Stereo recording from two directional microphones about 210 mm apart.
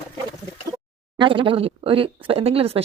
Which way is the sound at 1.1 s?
25° right (ahead or behind).